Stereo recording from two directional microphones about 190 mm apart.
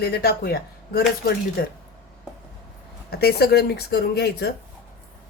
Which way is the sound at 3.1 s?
55° left (ahead or behind).